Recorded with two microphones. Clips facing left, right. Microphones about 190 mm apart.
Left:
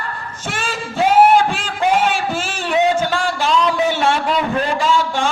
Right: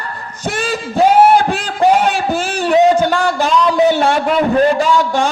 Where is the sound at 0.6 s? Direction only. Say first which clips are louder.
Right 5 dB; 40° right (ahead or behind).